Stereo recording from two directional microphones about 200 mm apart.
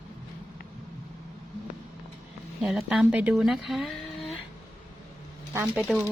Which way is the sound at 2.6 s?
Centre (ahead or behind).